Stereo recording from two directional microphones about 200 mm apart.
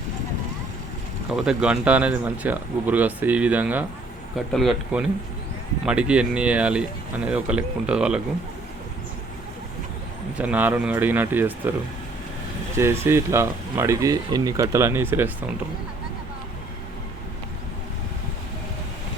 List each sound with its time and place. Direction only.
1.3 s speech: 5° right (ahead or behind)
10.3 s speech: 5° right (ahead or behind)
12.7 s speech: 10° right (ahead or behind)